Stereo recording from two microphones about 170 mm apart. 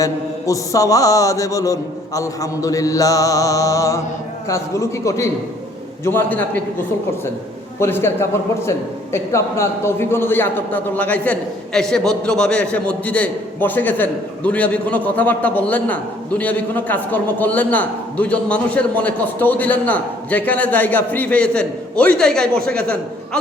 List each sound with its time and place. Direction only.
0.0 s mantra: 20° left (ahead or behind)
4.4 s a man's voice: 15° left (ahead or behind)
7.8 s a man's voice: 15° left (ahead or behind)